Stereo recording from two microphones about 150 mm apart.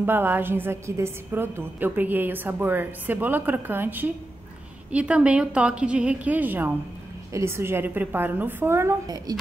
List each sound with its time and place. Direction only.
0.0 s a woman's voice: 15° right (ahead or behind)